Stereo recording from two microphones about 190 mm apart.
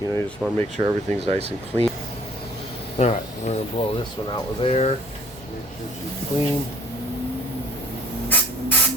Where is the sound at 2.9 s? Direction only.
35° left (ahead or behind).